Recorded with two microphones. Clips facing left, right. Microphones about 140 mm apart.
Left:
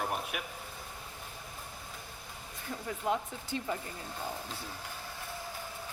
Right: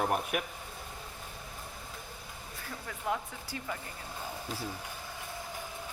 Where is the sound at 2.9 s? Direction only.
20° left (ahead or behind).